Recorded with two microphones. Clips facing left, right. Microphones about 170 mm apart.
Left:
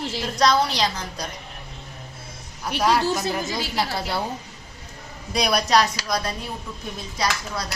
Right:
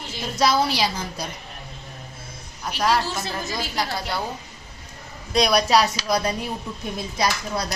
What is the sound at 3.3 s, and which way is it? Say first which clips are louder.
Speech: left 2 dB; 20° left (ahead or behind).